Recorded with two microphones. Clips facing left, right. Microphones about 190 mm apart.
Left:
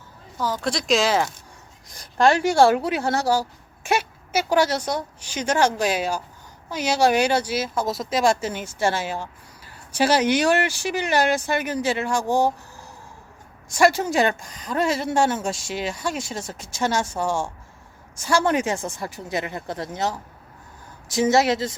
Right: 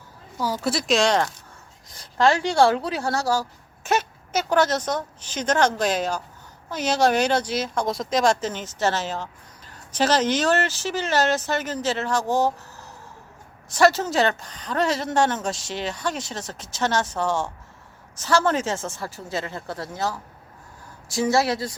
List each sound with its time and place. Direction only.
0.3 s speech: 10° right (ahead or behind)
2.0 s speech: 20° left (ahead or behind)